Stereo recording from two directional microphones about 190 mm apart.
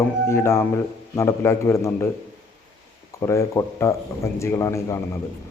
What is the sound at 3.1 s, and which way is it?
Speech, 15° left (ahead or behind).